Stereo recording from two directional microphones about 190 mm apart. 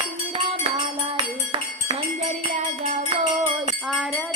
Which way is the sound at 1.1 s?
25° right (ahead or behind).